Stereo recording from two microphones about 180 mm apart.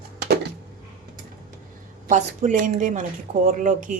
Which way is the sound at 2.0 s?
45° right (ahead or behind).